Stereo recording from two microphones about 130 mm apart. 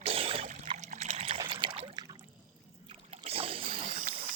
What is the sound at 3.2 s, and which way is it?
Boat, 50° right (ahead or behind).